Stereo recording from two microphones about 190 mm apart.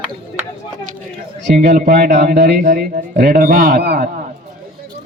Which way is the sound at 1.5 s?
55° right (ahead or behind).